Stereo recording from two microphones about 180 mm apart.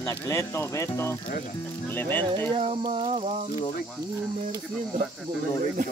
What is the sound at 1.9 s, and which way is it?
Speech, 10° left (ahead or behind).